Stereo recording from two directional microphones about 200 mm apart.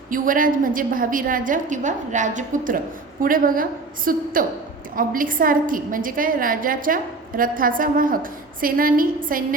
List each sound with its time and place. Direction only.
0.1 s a woman's voice: 45° right (ahead or behind)